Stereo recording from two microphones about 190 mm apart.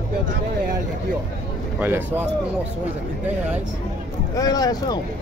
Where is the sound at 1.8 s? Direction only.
10° right (ahead or behind).